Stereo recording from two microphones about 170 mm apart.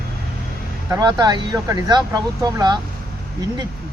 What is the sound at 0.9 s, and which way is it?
Speech, 25° right (ahead or behind).